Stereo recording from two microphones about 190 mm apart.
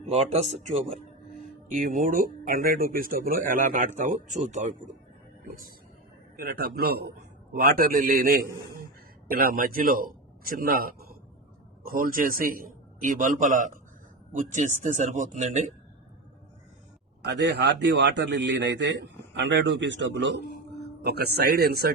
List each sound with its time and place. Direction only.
0.1 s speech: 35° right (ahead or behind)
6.3 s a man's voice: 50° right (ahead or behind)
17.2 s a man's voice: 65° right (ahead or behind)
21.0 s speech: 55° right (ahead or behind)